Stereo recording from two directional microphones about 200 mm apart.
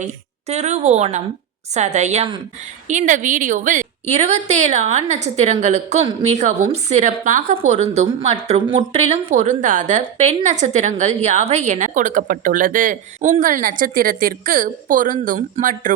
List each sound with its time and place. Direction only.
0.0 s a woman's voice: 35° right (ahead or behind)